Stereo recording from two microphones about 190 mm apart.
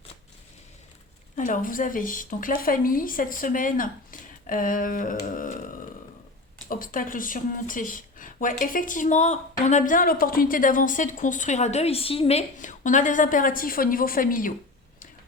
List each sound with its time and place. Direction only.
1.4 s a woman's voice: 45° left (ahead or behind)
6.7 s a woman's voice: 45° left (ahead or behind)